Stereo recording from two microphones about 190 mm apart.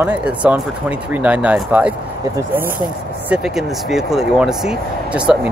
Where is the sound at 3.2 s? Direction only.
5° right (ahead or behind).